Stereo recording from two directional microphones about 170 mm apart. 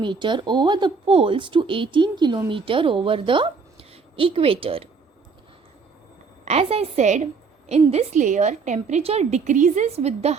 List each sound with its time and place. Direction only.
0.0 s speech: 30° right (ahead or behind)
6.4 s a woman's voice: 40° right (ahead or behind)